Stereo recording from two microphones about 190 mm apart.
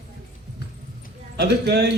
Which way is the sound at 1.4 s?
60° right (ahead or behind).